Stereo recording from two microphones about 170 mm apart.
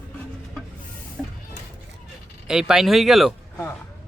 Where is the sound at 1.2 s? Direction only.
5° right (ahead or behind).